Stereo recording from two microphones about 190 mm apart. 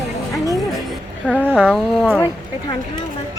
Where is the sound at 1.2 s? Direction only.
5° left (ahead or behind).